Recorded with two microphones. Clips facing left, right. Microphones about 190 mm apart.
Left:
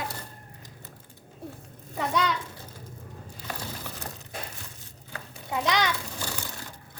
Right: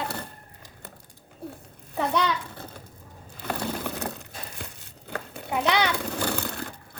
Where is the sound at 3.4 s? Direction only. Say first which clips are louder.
Right 8 dB; 60° right (ahead or behind).